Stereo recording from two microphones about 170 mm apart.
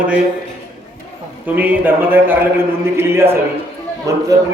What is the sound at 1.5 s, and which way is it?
A man's voice, 10° right (ahead or behind).